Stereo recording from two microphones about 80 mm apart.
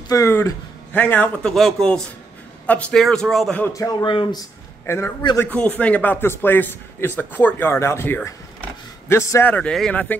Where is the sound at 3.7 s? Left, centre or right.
Left.